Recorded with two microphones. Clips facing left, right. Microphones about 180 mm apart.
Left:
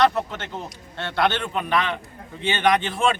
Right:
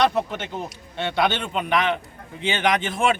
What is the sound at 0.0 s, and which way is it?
A man's voice, 15° right (ahead or behind).